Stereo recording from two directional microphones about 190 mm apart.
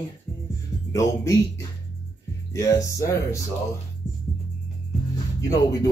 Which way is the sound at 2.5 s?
15° left (ahead or behind).